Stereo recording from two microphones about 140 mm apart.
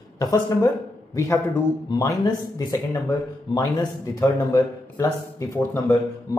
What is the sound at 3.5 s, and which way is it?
A man's voice, 25° left (ahead or behind).